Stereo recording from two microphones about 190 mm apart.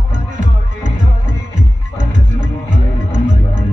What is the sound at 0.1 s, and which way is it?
Music, 40° right (ahead or behind).